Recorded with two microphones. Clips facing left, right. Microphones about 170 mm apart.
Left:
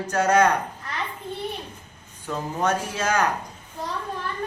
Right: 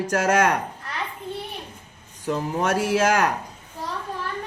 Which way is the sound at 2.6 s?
80° right.